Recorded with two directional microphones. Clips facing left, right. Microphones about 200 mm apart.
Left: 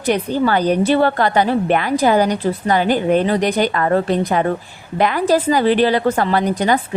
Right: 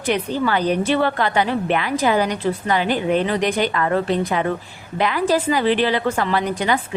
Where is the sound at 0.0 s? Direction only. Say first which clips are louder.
Left 4 dB; 45° left (ahead or behind).